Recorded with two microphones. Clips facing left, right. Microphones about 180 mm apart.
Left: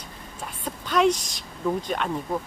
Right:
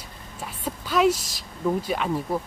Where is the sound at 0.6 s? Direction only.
5° right (ahead or behind).